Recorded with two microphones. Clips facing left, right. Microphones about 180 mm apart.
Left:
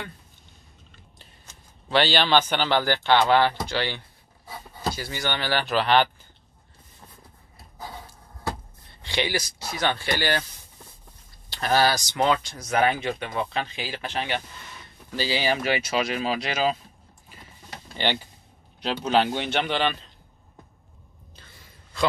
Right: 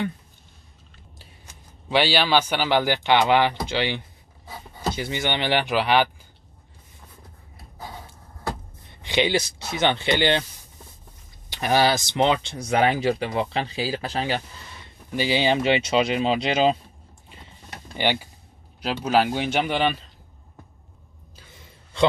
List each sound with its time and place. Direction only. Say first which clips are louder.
1.1 s a man's voice: right 5 dB; 15° right (ahead or behind)
9.0 s speech: right 5 dB; 20° right (ahead or behind)
11.5 s speech: right 2 dB; 15° right (ahead or behind); by 14.4 s 35° right (ahead or behind)
15.0 s speech: right 4 dB; 20° right (ahead or behind)
17.9 s a sound: right 3 dB; 10° right (ahead or behind)
18.8 s a man's voice: right 1 dB; 5° right (ahead or behind)